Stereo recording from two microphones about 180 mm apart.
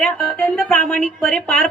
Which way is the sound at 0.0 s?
5° left (ahead or behind).